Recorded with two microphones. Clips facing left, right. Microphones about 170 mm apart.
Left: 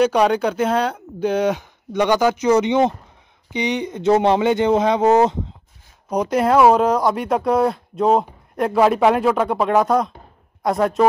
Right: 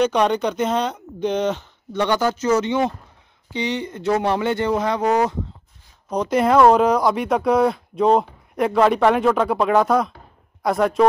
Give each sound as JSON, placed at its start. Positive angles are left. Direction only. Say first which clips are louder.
{"t": 0.0, "sound": "speech", "louder": "left 2 dB", "side_deg": 10}
{"t": 6.0, "sound": "speech", "louder": "left 1 dB", "side_deg": 10}